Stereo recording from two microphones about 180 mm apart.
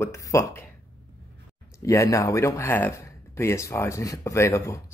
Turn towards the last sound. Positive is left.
turn(degrees=15)  # may be behind; listen again after turning